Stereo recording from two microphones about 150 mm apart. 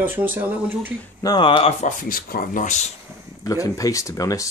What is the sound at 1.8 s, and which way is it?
Speech, 65° left (ahead or behind).